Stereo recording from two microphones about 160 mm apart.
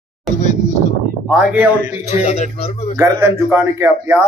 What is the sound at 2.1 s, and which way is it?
Speech, 45° left (ahead or behind).